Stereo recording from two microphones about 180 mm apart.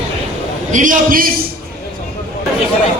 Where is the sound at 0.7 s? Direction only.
45° right (ahead or behind).